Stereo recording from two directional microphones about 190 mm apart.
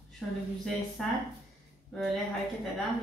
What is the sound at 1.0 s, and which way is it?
Speech, centre (ahead or behind).